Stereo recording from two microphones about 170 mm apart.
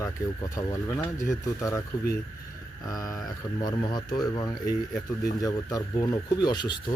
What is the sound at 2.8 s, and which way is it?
Speech, 20° left (ahead or behind).